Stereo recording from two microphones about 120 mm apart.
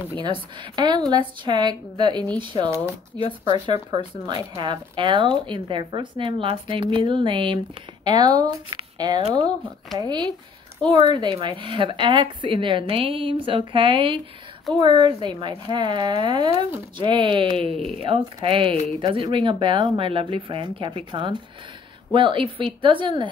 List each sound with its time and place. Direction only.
0.2 s speech: 40° right (ahead or behind)
3.2 s speech: 50° left (ahead or behind)
4.3 s speech: 40° right (ahead or behind)
8.2 s speech: 30° right (ahead or behind)